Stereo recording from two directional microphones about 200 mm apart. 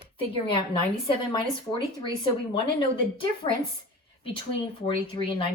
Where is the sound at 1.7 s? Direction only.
25° left (ahead or behind).